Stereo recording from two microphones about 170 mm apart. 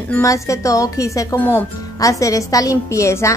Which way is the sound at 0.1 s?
20° left (ahead or behind).